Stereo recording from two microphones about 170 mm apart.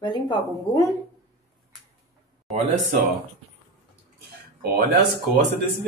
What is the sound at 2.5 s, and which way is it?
Speech, centre (ahead or behind).